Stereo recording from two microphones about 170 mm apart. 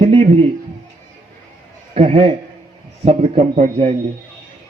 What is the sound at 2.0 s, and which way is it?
A man's voice, 35° right (ahead or behind).